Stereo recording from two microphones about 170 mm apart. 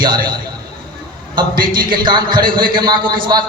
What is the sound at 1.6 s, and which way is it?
A man's voice, 30° right (ahead or behind).